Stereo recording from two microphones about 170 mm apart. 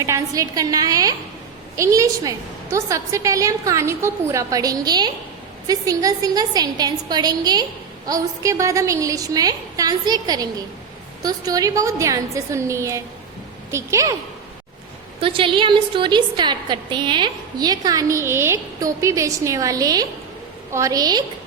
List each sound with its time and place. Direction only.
0.0 s a woman's voice: 20° right (ahead or behind)
15.2 s a woman's voice: 30° right (ahead or behind)